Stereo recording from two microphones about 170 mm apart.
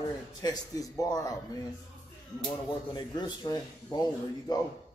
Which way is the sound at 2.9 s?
25° left (ahead or behind).